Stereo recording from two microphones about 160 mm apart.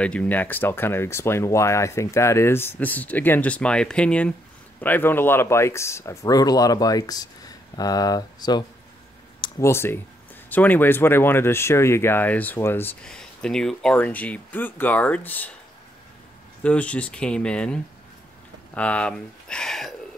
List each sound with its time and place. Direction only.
0.0 s speech: 10° left (ahead or behind)
16.6 s speech: 10° left (ahead or behind)
18.8 s speech: 10° left (ahead or behind)